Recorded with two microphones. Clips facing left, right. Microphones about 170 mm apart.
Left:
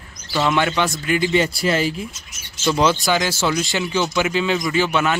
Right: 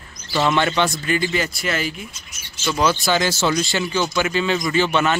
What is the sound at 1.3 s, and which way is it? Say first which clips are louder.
Speech: left 5 dB; 30° left (ahead or behind).